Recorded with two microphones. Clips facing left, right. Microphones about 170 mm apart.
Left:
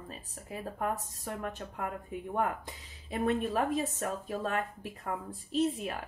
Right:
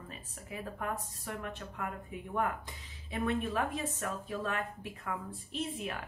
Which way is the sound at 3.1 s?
45° left (ahead or behind).